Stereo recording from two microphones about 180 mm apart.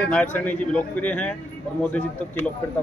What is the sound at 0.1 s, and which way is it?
A man's voice, 10° left (ahead or behind).